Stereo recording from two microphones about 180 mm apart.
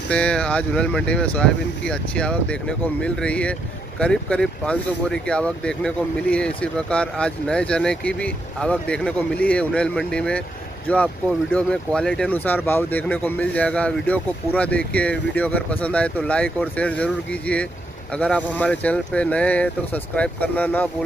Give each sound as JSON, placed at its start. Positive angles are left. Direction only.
{"t": 0.1, "sound": "speech", "side_deg": 5}